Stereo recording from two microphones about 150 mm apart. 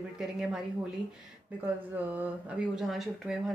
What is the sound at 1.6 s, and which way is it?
Speech, 10° right (ahead or behind).